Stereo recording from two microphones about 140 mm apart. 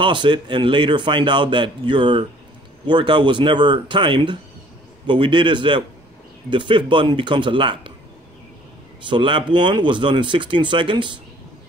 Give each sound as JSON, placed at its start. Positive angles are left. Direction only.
{"t": 0.0, "sound": "a man's voice", "side_deg": -35}
{"t": 9.0, "sound": "a man's voice", "side_deg": -35}